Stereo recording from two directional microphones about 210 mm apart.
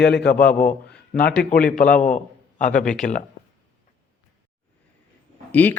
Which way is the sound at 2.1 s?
40° left (ahead or behind).